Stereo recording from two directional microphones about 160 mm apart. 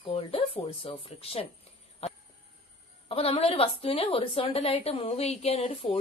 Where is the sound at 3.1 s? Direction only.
35° left (ahead or behind).